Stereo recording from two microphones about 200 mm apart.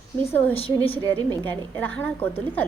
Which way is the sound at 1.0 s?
20° right (ahead or behind).